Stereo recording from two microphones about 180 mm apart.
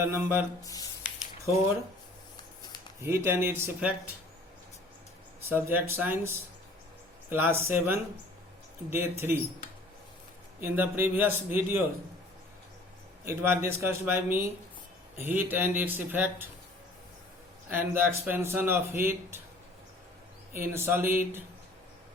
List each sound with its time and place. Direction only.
0.0 s speech: 10° right (ahead or behind)
0.6 s a sound: 20° left (ahead or behind)
3.0 s speech: 15° right (ahead or behind)
5.4 s speech: 10° right (ahead or behind)
10.6 s speech: 10° right (ahead or behind)
13.2 s speech: 15° right (ahead or behind)
17.7 s speech: 10° right (ahead or behind)
20.5 s speech: 15° right (ahead or behind)